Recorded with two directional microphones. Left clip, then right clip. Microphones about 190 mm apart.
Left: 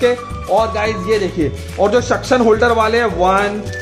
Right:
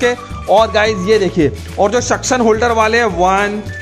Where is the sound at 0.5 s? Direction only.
65° right (ahead or behind).